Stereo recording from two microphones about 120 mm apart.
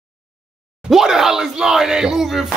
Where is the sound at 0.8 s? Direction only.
5° right (ahead or behind).